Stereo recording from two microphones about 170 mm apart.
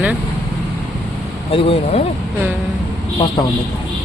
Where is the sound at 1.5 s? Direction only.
35° left (ahead or behind).